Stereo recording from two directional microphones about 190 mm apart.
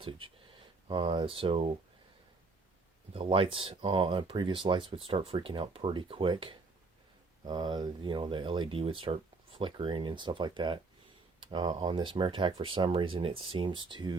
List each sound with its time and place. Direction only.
0.9 s speech: 25° right (ahead or behind)
3.1 s speech: 30° right (ahead or behind)